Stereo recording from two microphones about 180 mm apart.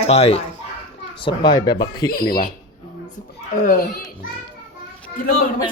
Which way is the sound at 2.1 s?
55° left (ahead or behind).